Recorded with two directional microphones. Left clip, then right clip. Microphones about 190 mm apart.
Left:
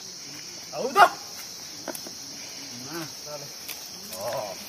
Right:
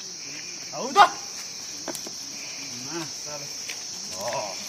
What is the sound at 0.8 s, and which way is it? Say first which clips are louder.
Speech: right 1 dB; 25° left (ahead or behind).